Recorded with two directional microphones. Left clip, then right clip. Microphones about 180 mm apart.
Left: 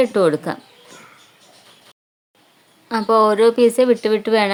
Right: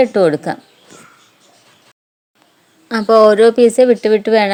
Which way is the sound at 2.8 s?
20° right (ahead or behind).